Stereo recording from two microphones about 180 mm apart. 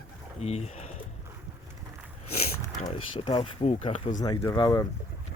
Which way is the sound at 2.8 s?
30° left (ahead or behind).